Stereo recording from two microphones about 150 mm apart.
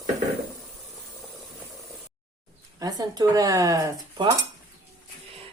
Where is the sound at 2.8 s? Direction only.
25° right (ahead or behind).